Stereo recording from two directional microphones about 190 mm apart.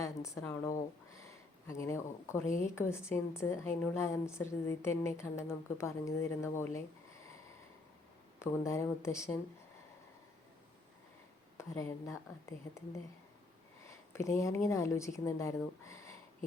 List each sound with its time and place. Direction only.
0.0 s a woman's voice: 15° left (ahead or behind)
8.4 s a woman's voice: 15° left (ahead or behind)
11.5 s a woman's voice: 15° left (ahead or behind)
14.1 s a woman's voice: 15° left (ahead or behind)